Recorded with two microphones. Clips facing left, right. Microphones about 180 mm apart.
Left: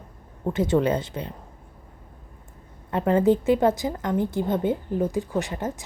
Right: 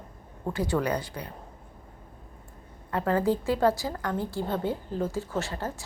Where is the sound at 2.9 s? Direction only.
20° left (ahead or behind).